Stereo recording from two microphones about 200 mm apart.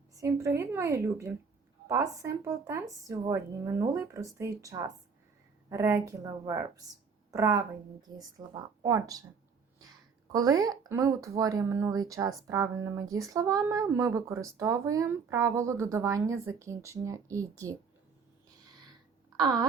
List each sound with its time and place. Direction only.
0.1 s speech: 15° right (ahead or behind)
10.3 s speech: 15° right (ahead or behind)
19.4 s speech: 20° right (ahead or behind)